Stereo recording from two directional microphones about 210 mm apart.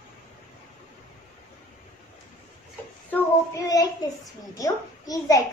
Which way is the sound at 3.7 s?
15° left (ahead or behind).